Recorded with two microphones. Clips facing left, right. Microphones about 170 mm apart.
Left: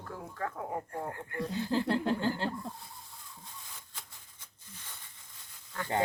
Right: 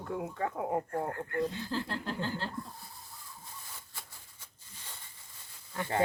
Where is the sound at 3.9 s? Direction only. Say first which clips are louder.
Right 1 dB; 10° right (ahead or behind).